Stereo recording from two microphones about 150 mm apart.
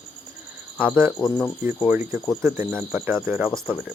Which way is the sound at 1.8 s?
10° right (ahead or behind).